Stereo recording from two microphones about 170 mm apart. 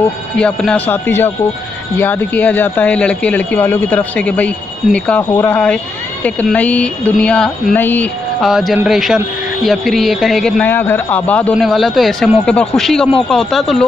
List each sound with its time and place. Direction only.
0.4 s speech: 5° left (ahead or behind)
5.3 s speech: 20° left (ahead or behind)
6.2 s speech: 10° left (ahead or behind)
8.4 s speech: centre (ahead or behind)